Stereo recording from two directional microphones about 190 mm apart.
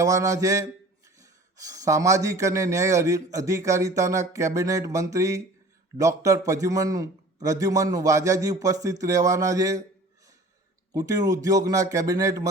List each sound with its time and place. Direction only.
0.0 s a man's voice: 15° right (ahead or behind)
10.9 s a man's voice: 20° right (ahead or behind)